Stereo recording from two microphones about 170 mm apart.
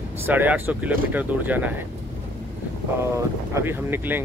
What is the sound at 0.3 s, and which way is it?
Speech, 10° right (ahead or behind).